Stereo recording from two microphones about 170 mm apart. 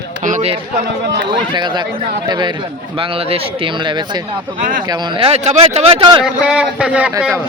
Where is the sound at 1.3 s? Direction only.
25° right (ahead or behind).